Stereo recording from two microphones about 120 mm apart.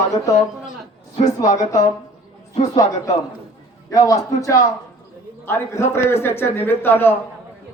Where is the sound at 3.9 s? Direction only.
30° left (ahead or behind).